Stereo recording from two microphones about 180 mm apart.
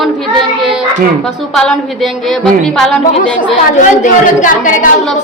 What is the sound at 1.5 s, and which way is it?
A woman's voice, centre (ahead or behind).